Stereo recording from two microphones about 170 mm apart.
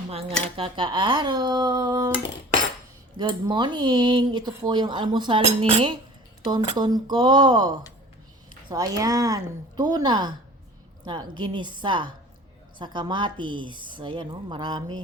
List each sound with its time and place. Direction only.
0.1 s a woman's voice: 35° right (ahead or behind)
3.2 s a woman's voice: 25° right (ahead or behind)
8.7 s a woman's voice: 20° right (ahead or behind)